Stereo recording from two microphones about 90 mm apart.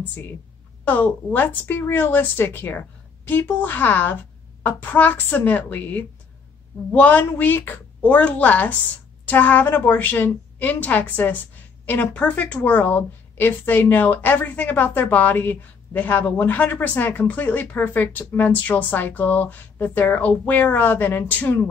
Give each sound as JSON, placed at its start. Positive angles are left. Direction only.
{"t": 0.8, "sound": "a woman's voice", "side_deg": 20}